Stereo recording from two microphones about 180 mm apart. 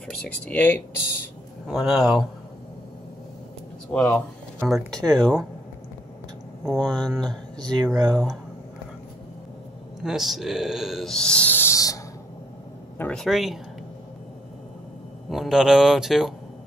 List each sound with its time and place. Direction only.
0.1 s speech: 5° left (ahead or behind)
1.7 s speech: 5° right (ahead or behind)
3.9 s speech: 5° left (ahead or behind)
5.0 s speech: 20° right (ahead or behind)
6.6 s speech: centre (ahead or behind)
7.6 s speech: 25° right (ahead or behind)
8.1 s speech: 5° left (ahead or behind)
10.0 s speech: centre (ahead or behind); by 12.0 s 20° left (ahead or behind)
12.9 s speech: 5° left (ahead or behind)
15.2 s speech: centre (ahead or behind)